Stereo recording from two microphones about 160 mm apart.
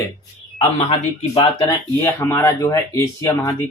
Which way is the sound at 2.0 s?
15° left (ahead or behind).